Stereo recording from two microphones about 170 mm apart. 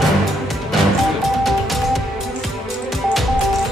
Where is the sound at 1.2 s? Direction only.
Centre (ahead or behind).